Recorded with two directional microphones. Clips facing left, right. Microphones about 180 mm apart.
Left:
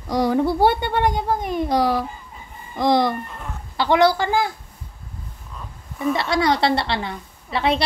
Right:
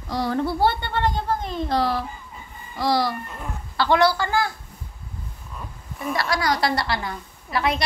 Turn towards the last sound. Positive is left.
turn(degrees=25)  # may be behind; listen again after turning